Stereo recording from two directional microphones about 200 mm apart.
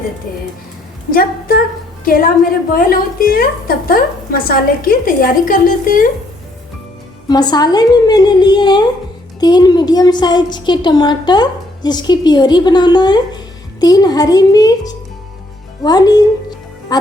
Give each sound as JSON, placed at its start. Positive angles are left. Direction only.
{"t": 1.1, "sound": "a woman's voice", "side_deg": 45}
{"t": 7.3, "sound": "a woman's voice", "side_deg": 20}